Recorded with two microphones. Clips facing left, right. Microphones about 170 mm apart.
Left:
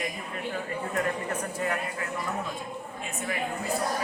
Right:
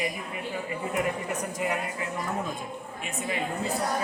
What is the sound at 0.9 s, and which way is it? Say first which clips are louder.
A man's voice: even; 15° right (ahead or behind).